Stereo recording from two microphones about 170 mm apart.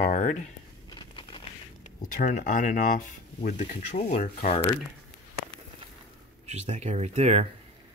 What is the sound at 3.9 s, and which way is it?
Speech, 40° left (ahead or behind).